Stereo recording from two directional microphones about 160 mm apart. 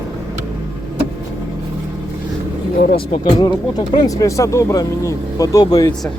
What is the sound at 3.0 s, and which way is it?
Speech, 35° left (ahead or behind).